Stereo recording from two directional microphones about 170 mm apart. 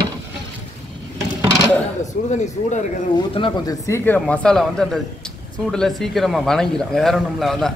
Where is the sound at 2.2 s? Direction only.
45° left (ahead or behind).